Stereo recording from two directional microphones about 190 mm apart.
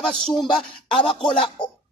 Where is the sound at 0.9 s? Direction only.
25° left (ahead or behind).